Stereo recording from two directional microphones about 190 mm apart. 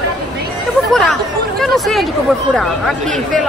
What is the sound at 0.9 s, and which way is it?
Speech, centre (ahead or behind).